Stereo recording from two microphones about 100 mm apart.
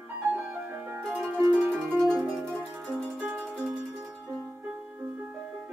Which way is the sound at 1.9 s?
Centre (ahead or behind).